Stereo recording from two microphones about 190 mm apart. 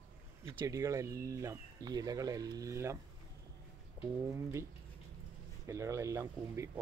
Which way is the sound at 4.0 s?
15° right (ahead or behind).